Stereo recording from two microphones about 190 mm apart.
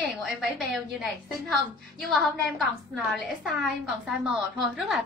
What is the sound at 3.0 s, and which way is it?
A woman's voice, centre (ahead or behind).